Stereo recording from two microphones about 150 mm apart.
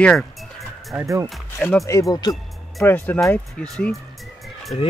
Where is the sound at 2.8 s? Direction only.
15° left (ahead or behind).